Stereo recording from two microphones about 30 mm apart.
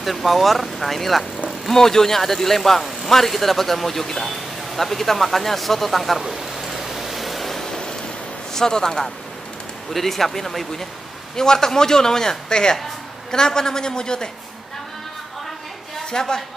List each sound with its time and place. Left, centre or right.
0.0 s speech: centre
1.7 s speech: centre
6.1 s a sound: centre
8.5 s a man's voice: left
9.9 s speech: centre
11.3 s a man's voice: centre
16.1 s a man's voice: left